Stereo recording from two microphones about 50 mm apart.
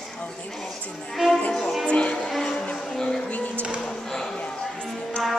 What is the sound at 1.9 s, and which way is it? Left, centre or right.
Music, left.